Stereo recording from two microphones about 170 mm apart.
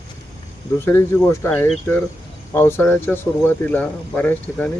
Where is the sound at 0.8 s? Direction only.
10° left (ahead or behind).